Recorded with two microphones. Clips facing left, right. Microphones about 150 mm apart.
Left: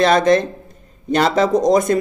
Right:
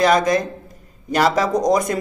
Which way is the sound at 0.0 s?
25° left (ahead or behind).